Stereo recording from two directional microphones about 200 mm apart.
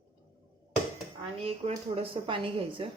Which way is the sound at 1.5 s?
30° right (ahead or behind).